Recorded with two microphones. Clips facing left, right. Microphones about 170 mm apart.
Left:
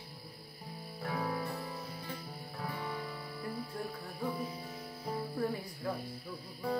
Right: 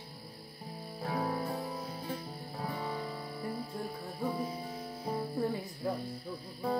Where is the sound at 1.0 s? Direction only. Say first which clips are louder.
Right 2 dB; 35° right (ahead or behind).